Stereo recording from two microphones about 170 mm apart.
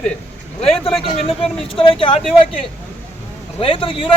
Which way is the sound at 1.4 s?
30° left (ahead or behind).